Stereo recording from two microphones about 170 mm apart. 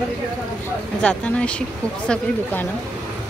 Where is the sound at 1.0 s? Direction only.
5° left (ahead or behind).